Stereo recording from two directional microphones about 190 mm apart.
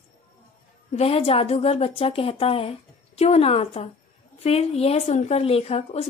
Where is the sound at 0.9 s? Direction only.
30° left (ahead or behind).